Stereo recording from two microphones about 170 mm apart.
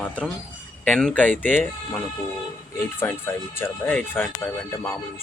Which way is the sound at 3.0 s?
10° left (ahead or behind).